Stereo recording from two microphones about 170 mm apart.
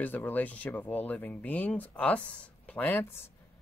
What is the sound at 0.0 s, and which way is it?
Speech, 10° left (ahead or behind).